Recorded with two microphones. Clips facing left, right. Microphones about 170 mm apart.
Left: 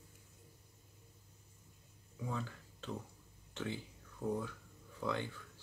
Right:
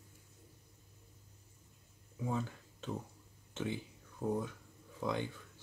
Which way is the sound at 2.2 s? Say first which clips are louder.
Right 4 dB; 20° right (ahead or behind).